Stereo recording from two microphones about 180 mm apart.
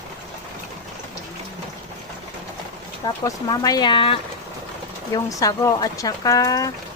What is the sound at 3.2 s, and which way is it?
Speech, 20° left (ahead or behind).